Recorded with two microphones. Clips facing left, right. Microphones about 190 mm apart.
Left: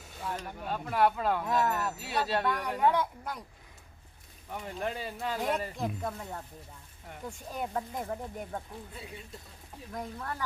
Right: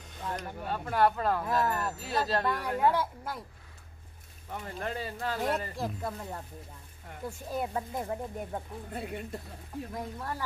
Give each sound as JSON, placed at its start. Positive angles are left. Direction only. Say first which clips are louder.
{"t": 0.0, "sound": "speech", "louder": "right 1 dB", "side_deg": 5}
{"t": 4.5, "sound": "speech", "louder": "left 1 dB", "side_deg": 0}
{"t": 8.9, "sound": "speech", "louder": "right 8 dB", "side_deg": -55}
{"t": 9.9, "sound": "speech", "louder": "left 2 dB", "side_deg": -10}